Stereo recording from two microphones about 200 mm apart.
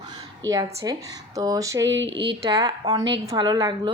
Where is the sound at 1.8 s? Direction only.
65° right (ahead or behind).